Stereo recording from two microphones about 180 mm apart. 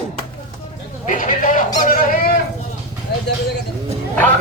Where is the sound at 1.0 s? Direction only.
45° left (ahead or behind).